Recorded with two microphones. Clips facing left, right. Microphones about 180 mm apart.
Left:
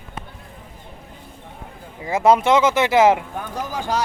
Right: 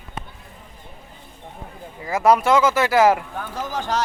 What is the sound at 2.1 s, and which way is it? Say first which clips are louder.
A man's voice: left 1 dB; 25° left (ahead or behind).